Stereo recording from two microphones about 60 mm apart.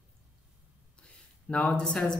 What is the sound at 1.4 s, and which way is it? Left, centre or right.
Speech, left.